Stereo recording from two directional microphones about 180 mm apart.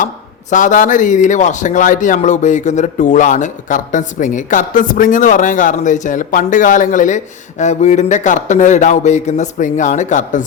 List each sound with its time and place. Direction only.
0.5 s a man's voice: 45° left (ahead or behind)